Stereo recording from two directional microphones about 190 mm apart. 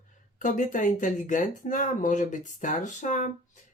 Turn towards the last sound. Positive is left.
turn(degrees=40)  # may be behind; listen again after turning